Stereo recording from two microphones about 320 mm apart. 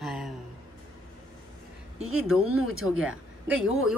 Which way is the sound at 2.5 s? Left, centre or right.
Right.